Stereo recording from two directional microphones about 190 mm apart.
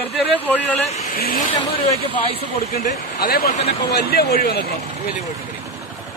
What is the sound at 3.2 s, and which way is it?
Speech, 50° left (ahead or behind).